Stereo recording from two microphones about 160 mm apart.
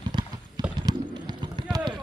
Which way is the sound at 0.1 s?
25° right (ahead or behind).